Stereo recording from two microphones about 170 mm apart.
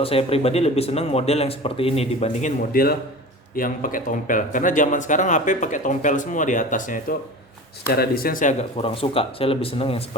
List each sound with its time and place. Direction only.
0.0 s speech: 35° left (ahead or behind)
2.7 s speech: 60° left (ahead or behind)
7.9 s speech: 60° left (ahead or behind)
8.8 s speech: 35° left (ahead or behind)